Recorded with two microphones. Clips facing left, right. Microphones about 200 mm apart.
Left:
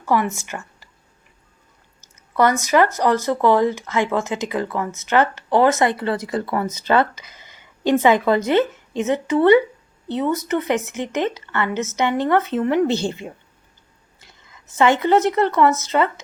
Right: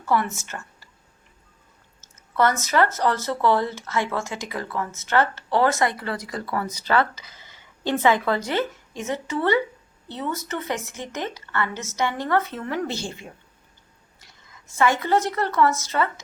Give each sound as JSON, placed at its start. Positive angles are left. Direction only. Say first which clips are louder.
{"t": 0.1, "sound": "speech", "louder": "left 3 dB", "side_deg": 15}
{"t": 2.0, "sound": "speech", "louder": "left 3 dB", "side_deg": 15}